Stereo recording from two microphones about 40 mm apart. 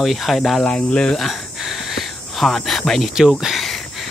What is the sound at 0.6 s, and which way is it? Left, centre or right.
Speech, left.